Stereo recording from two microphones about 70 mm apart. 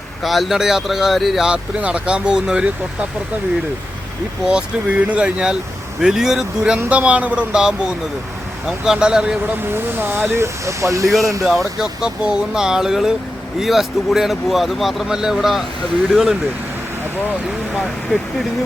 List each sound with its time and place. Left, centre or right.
0.2 s speech: centre
4.4 s speech: centre
6.8 s speech: centre
9.7 s speech: right
11.4 s speech: centre